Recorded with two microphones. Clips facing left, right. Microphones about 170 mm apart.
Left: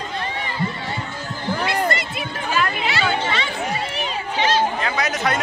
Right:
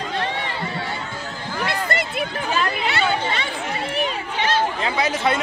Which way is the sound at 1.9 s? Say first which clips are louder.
Even; 55° right (ahead or behind).